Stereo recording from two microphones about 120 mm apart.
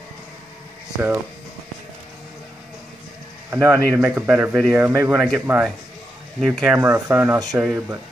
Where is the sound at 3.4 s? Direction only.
20° right (ahead or behind).